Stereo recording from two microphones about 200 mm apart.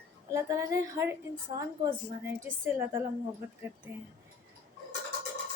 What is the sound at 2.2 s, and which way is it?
Speech, 10° right (ahead or behind).